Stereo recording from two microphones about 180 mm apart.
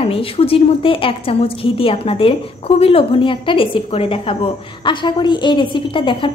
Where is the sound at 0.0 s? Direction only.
30° left (ahead or behind).